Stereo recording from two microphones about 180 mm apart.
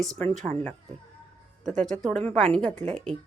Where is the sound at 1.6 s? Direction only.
Centre (ahead or behind).